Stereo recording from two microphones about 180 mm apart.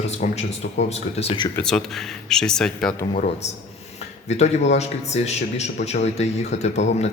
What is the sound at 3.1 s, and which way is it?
Speech, 35° left (ahead or behind).